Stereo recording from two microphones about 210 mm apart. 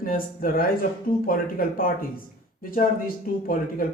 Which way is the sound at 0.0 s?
40° left (ahead or behind).